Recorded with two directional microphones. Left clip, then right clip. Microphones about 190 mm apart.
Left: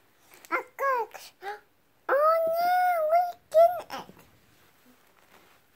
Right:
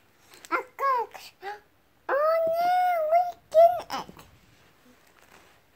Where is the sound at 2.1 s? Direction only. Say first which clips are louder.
Left 1 dB; 25° left (ahead or behind).